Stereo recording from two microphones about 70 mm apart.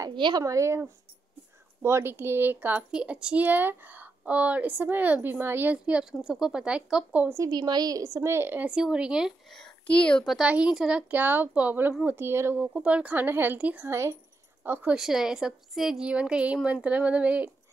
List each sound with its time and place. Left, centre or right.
0.4 s a woman's voice: right
2.9 s a woman's voice: centre; by 5.8 s right
6.2 s a woman's voice: centre
7.4 s a woman's voice: right
8.6 s a woman's voice: centre
9.8 s a child's voice: centre
10.4 s a woman's voice: centre
11.1 s a woman's voice: right
12.5 s a woman's voice: centre
13.8 s a woman's voice: right
14.6 s speech: right
15.0 s a woman's voice: centre
16.1 s a woman's voice: centre